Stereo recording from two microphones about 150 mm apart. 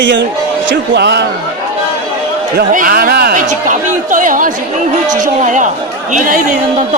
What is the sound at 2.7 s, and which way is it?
Speech, 70° right (ahead or behind).